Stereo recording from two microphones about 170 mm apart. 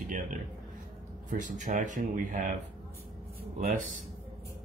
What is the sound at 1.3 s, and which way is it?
Speech, 45° right (ahead or behind).